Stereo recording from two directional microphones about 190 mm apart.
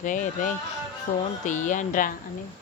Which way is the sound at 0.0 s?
40° left (ahead or behind).